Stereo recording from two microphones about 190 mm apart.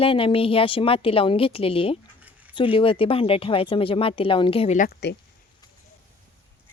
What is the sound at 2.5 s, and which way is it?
A woman's voice, 30° left (ahead or behind).